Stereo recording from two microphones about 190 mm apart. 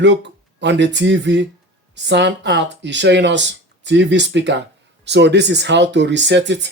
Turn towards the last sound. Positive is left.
turn(degrees=-65)  # may be behind; listen again after turning